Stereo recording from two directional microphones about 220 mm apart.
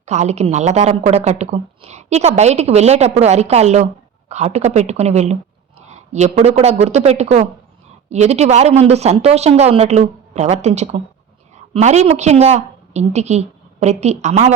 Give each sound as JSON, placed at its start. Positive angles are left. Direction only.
{"t": 0.0, "sound": "a woman's voice", "side_deg": -30}